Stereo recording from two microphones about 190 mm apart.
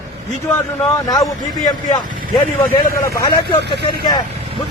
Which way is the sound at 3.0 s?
20° left (ahead or behind).